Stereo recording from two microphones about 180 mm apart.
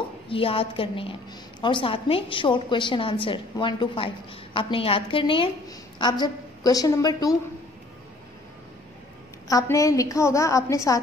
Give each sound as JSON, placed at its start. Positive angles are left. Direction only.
{"t": 0.3, "sound": "a woman's voice", "side_deg": 30}
{"t": 9.5, "sound": "a woman's voice", "side_deg": 20}